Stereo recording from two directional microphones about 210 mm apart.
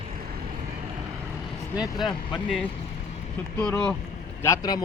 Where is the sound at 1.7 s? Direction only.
Centre (ahead or behind).